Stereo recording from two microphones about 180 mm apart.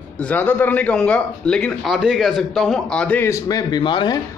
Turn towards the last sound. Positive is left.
turn(degrees=25)  # may be behind; listen again after turning